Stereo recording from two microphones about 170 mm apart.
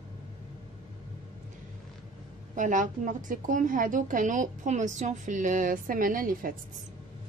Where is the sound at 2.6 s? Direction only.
50° right (ahead or behind).